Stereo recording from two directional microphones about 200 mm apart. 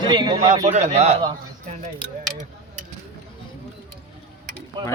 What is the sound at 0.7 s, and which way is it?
Speech, 35° right (ahead or behind).